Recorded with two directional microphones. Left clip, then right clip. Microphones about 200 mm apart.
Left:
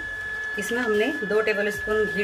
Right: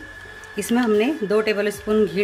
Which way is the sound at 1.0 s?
55° right (ahead or behind).